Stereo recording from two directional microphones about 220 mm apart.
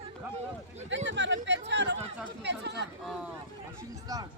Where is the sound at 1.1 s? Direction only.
55° right (ahead or behind).